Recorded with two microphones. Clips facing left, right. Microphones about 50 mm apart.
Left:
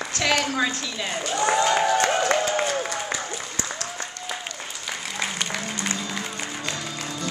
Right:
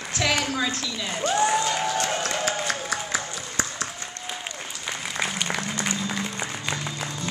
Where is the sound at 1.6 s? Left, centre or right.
Left.